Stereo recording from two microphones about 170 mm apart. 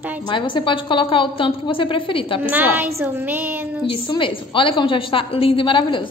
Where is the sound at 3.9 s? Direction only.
30° left (ahead or behind).